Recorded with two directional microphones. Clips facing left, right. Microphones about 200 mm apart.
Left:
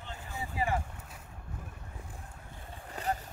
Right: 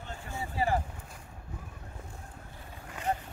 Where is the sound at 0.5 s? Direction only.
30° right (ahead or behind).